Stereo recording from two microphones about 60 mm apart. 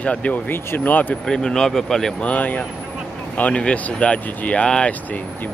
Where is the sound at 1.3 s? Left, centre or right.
Centre.